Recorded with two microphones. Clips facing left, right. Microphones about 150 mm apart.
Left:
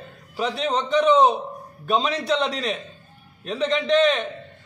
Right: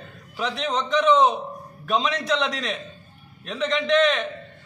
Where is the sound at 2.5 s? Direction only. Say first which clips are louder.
Left 3 dB; centre (ahead or behind).